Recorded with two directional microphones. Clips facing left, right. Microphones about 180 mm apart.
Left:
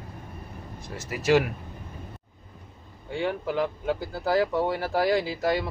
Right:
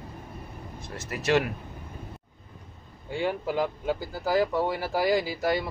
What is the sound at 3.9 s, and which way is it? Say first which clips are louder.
Speech: left 1 dB; centre (ahead or behind).